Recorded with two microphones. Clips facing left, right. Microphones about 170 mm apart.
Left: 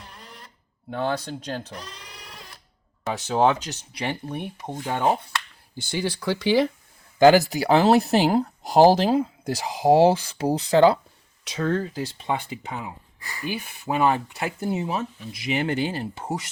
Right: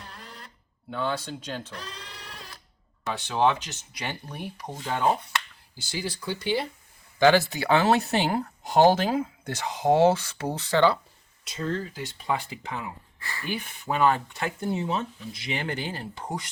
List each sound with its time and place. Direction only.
0.9 s speech: 45° left (ahead or behind)
1.7 s bleat: 15° left (ahead or behind)
3.2 s speech: 40° left (ahead or behind); by 5.2 s 20° left (ahead or behind)
5.7 s speech: 55° left (ahead or behind); by 6.7 s 90° left
7.2 s speech: 40° left (ahead or behind)
11.4 s speech: 70° left (ahead or behind)
11.8 s speech: 40° left (ahead or behind)
12.2 s speech: 20° left (ahead or behind)
15.4 s speech: 20° left (ahead or behind)